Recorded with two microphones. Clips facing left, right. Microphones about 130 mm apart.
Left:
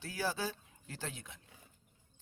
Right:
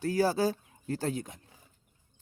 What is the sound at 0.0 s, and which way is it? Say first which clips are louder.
Speech: right 11 dB; 40° right (ahead or behind).